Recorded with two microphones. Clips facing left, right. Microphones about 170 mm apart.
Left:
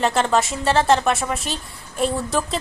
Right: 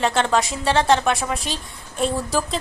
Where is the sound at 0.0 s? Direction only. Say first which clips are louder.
Left 1 dB; centre (ahead or behind).